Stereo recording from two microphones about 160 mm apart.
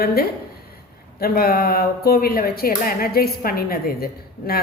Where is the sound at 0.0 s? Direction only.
70° left (ahead or behind).